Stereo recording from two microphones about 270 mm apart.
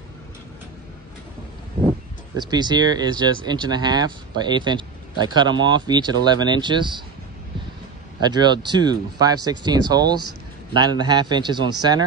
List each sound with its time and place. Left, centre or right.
2.3 s speech: centre
8.2 s speech: centre